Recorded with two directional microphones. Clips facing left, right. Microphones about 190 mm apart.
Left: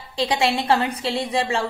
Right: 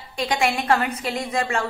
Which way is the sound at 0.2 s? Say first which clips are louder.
Left 2 dB; 30° left (ahead or behind).